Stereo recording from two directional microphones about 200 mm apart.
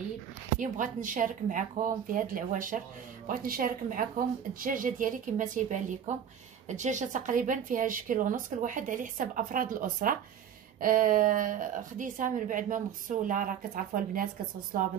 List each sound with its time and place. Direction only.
0.6 s a woman's voice: 40° right (ahead or behind)